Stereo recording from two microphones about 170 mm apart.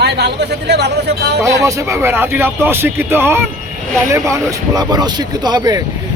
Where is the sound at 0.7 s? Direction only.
80° right.